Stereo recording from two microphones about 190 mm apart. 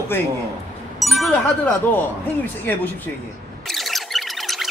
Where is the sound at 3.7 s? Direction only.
Centre (ahead or behind).